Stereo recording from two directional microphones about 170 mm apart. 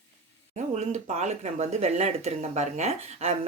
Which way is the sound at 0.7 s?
40° right (ahead or behind).